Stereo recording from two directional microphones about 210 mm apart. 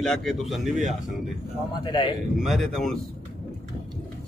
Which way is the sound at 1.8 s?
25° left (ahead or behind).